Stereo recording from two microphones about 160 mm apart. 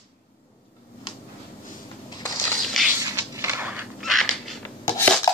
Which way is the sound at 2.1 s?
25° left (ahead or behind).